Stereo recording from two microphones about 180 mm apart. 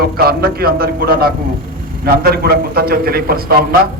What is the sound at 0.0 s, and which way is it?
A man's voice, 60° right (ahead or behind).